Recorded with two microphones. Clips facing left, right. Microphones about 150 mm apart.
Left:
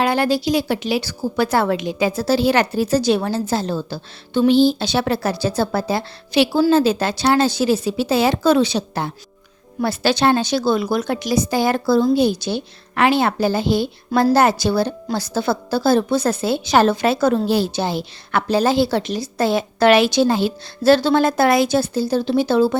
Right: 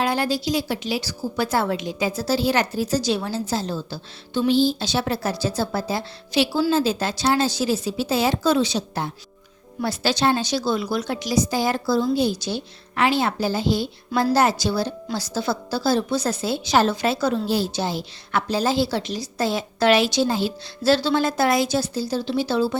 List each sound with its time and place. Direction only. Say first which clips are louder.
0.0 s a woman's voice: left 5 dB; 65° left (ahead or behind)